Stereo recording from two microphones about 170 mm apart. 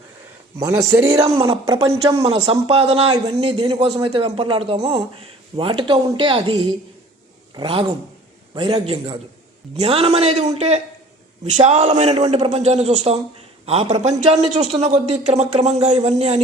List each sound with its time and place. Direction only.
0.6 s a man's voice: 20° right (ahead or behind)
2.2 s a man's voice: 35° right (ahead or behind)